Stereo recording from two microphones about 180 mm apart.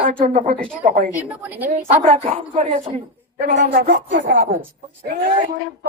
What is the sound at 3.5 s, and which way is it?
Speech, 60° right (ahead or behind).